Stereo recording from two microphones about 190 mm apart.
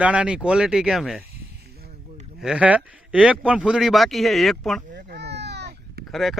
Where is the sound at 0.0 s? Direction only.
5° right (ahead or behind).